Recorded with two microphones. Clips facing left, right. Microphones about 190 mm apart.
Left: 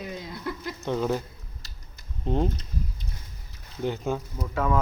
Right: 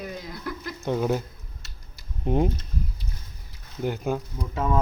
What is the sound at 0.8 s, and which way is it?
Speech, 10° right (ahead or behind).